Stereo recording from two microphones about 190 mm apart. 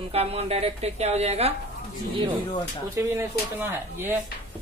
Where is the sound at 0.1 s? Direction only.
30° right (ahead or behind).